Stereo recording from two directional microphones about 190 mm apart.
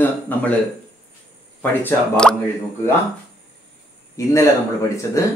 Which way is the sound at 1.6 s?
10° left (ahead or behind).